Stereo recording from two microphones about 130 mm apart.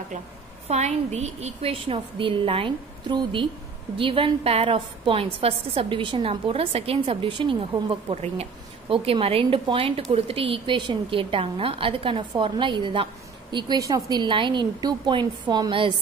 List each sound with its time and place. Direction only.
0.7 s a woman's voice: 60° right (ahead or behind); by 15.9 s 40° right (ahead or behind)